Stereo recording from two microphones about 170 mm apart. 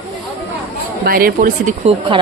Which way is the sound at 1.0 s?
60° right (ahead or behind).